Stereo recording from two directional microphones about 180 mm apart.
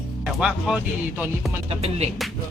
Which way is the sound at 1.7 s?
35° right (ahead or behind).